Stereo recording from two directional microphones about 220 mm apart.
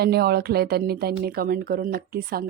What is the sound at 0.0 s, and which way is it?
A woman's voice, 45° right (ahead or behind).